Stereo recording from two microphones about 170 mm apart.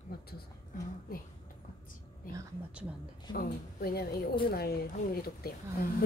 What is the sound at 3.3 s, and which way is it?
Speech, 65° left (ahead or behind).